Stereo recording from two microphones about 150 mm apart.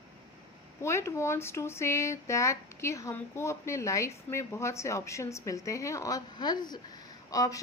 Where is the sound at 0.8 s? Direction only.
20° left (ahead or behind).